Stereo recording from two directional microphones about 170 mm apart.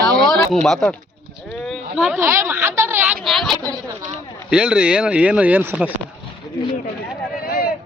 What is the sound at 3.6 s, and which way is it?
Speech, 20° right (ahead or behind).